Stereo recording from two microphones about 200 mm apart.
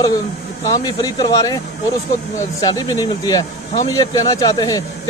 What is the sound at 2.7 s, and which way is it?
A man's voice, 20° left (ahead or behind).